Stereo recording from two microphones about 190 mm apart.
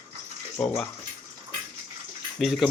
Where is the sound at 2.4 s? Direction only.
Centre (ahead or behind).